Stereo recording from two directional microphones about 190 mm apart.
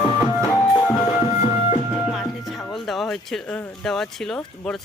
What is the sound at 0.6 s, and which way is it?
Music, 20° left (ahead or behind).